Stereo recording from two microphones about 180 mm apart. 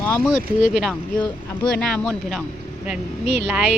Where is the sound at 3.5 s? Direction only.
5° right (ahead or behind).